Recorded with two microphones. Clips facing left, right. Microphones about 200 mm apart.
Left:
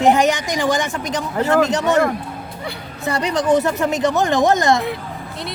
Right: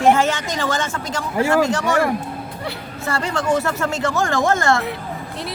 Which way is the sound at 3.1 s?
20° left (ahead or behind).